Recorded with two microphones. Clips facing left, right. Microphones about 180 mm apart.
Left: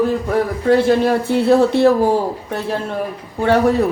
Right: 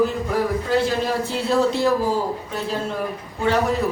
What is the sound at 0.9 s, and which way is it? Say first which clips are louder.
Speech: left 8 dB; 60° left (ahead or behind).